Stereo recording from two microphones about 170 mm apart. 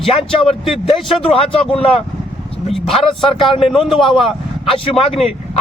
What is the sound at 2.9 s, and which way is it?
Speech, 30° left (ahead or behind).